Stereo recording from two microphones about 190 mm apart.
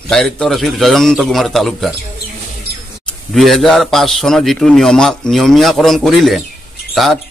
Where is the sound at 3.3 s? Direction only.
Centre (ahead or behind).